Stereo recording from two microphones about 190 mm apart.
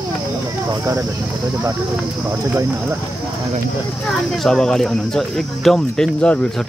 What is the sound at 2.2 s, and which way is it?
Speech, 15° right (ahead or behind).